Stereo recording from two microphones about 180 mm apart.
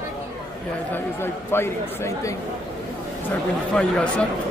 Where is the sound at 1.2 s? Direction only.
15° left (ahead or behind).